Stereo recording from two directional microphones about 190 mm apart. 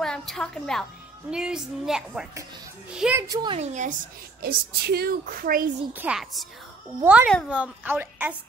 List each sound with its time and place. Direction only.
0.0 s a woman's voice: centre (ahead or behind)
3.2 s speech: 20° right (ahead or behind)
3.5 s a woman's voice: 40° right (ahead or behind)
4.4 s a woman's voice: 55° right (ahead or behind)
5.9 s a woman's voice: 5° right (ahead or behind)